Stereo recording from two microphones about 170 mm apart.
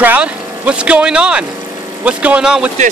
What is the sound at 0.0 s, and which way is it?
Speech, 10° right (ahead or behind).